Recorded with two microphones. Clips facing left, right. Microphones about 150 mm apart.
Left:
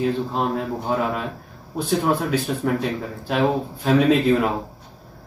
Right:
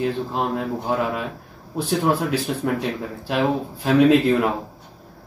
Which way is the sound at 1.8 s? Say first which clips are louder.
Even; 5° right (ahead or behind).